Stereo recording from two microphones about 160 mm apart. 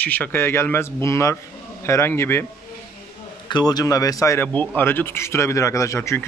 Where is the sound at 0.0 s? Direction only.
10° left (ahead or behind).